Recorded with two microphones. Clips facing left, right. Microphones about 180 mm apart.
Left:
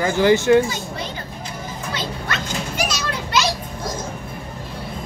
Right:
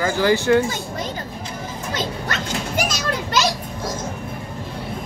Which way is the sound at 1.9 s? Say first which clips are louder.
Right 2 dB; 45° right (ahead or behind).